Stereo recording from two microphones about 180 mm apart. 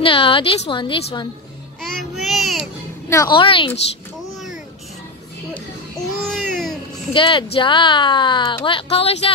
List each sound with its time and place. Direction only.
0.0 s speech: 30° left (ahead or behind)
1.8 s a sound: centre (ahead or behind)
3.1 s a woman's voice: 15° left (ahead or behind)
3.3 s speech: 30° left (ahead or behind)
5.5 s a sound: 5° left (ahead or behind)
7.2 s speech: 25° left (ahead or behind)